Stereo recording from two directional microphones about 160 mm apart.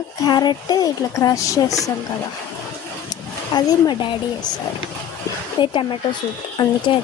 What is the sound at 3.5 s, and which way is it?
Speech, 25° left (ahead or behind).